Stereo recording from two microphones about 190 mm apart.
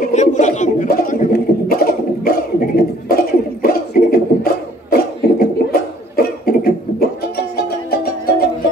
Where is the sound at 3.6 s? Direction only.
50° left (ahead or behind).